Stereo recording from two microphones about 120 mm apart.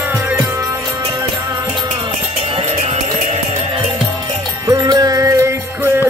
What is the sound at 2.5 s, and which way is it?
Music, 60° right (ahead or behind).